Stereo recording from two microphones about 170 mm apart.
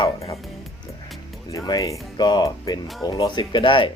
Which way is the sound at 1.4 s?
20° left (ahead or behind).